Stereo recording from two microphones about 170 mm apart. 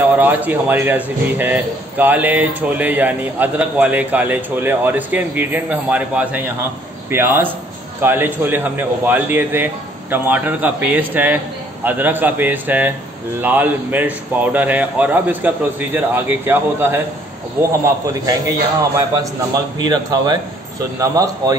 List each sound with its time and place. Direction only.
0.1 s a man's voice: 10° right (ahead or behind)